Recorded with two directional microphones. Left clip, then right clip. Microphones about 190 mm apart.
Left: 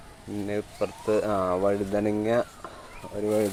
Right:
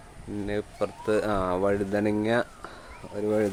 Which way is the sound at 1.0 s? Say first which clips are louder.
Left 1 dB; 15° right (ahead or behind).